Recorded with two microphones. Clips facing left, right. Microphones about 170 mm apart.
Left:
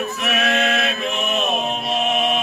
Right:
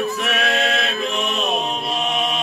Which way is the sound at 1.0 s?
35° right (ahead or behind).